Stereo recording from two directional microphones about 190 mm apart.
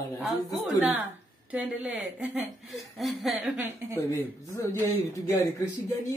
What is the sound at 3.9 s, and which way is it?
Speech, 10° left (ahead or behind).